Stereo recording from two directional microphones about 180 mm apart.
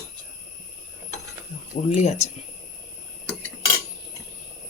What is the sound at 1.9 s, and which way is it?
Speech, 40° left (ahead or behind).